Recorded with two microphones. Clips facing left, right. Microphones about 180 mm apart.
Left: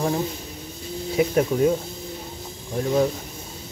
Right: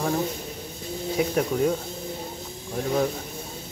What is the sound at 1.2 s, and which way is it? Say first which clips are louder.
Speech: left 4 dB; 5° left (ahead or behind).